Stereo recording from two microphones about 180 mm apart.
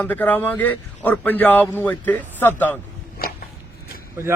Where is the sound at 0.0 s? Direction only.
10° left (ahead or behind).